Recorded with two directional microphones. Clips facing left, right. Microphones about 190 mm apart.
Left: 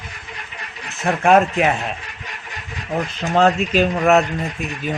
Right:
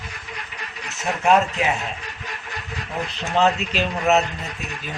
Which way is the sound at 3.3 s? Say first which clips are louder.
Left 4 dB; 50° left (ahead or behind).